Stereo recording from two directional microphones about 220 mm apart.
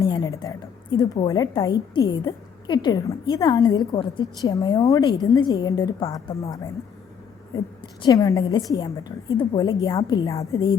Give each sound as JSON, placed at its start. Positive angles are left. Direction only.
{"t": 0.0, "sound": "a woman's voice", "side_deg": 15}
{"t": 8.0, "sound": "a woman's voice", "side_deg": 15}